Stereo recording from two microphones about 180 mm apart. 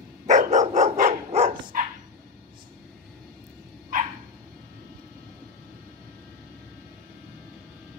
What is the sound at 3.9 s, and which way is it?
Dog, 50° right (ahead or behind).